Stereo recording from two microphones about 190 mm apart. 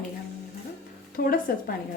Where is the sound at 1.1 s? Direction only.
50° left (ahead or behind).